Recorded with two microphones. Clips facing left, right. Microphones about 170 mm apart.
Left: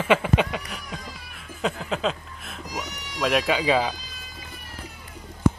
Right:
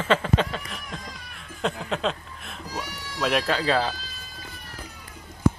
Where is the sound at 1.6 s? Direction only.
Centre (ahead or behind).